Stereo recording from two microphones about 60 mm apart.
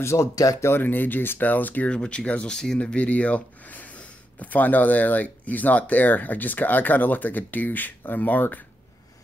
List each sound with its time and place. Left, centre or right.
0.0 s speech: left
0.6 s speech: left; by 2.8 s centre
2.8 s speech: left